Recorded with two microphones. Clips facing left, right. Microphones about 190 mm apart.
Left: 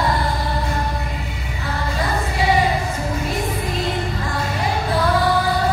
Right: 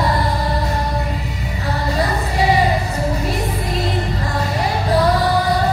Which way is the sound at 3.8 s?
35° right (ahead or behind).